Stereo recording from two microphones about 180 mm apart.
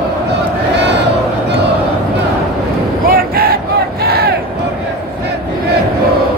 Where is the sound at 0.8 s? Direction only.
70° right (ahead or behind).